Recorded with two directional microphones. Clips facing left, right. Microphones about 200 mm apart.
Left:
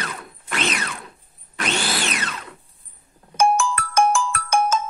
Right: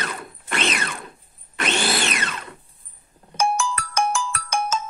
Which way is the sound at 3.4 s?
50° left (ahead or behind).